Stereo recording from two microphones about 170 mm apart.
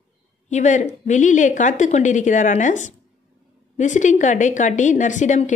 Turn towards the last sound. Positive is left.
turn(degrees=45)  # may be behind; listen again after turning